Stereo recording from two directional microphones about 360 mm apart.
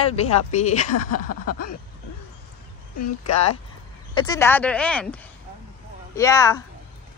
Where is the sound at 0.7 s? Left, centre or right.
Left.